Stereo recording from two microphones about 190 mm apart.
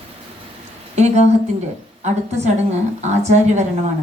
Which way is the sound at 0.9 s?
35° right (ahead or behind).